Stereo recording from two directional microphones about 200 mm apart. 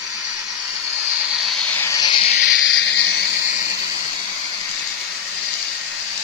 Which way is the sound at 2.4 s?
70° left (ahead or behind).